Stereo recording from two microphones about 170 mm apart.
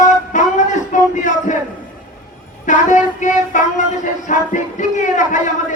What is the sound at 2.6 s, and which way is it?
Child singing, 45° left (ahead or behind).